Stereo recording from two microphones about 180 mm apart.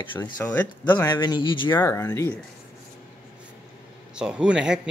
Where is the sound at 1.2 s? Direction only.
25° left (ahead or behind).